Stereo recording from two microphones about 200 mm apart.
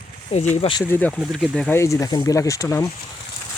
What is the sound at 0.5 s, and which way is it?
Speech, 25° left (ahead or behind).